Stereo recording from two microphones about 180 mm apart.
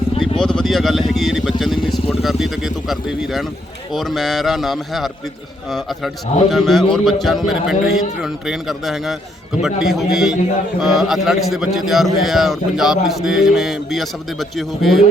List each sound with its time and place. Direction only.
0.2 s a man's voice: 5° left (ahead or behind)
6.5 s a man's voice: centre (ahead or behind)